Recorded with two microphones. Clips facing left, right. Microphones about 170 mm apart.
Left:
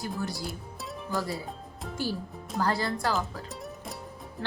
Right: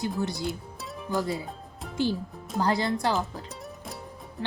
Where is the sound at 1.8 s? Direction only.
5° left (ahead or behind).